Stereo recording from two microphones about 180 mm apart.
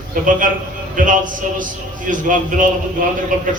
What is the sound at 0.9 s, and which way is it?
A man's voice, 45° right (ahead or behind).